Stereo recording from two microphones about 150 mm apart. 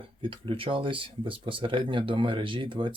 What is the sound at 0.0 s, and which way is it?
Speech, 35° right (ahead or behind).